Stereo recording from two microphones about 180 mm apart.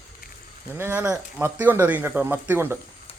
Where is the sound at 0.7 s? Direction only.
10° right (ahead or behind).